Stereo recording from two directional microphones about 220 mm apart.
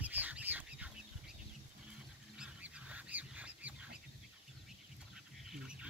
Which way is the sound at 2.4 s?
5° right (ahead or behind).